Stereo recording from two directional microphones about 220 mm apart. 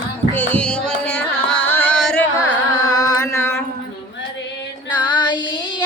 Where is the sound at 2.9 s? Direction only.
15° left (ahead or behind).